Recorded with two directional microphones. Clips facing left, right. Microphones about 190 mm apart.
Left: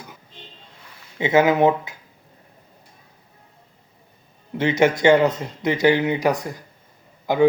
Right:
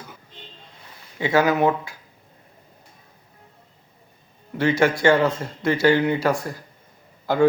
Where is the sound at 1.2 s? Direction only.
20° left (ahead or behind).